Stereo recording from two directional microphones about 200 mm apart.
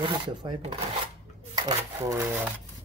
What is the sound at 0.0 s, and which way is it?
Speech, 25° right (ahead or behind).